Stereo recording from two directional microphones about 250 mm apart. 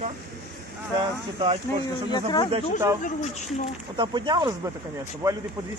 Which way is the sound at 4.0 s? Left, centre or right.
Centre.